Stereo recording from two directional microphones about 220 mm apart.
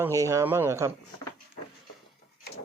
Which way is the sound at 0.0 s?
15° right (ahead or behind).